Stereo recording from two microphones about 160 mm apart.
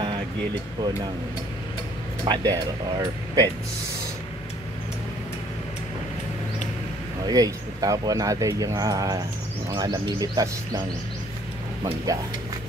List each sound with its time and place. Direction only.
2.2 s speech: 25° right (ahead or behind)
7.2 s speech: 25° right (ahead or behind)
12.1 s speech: 20° right (ahead or behind)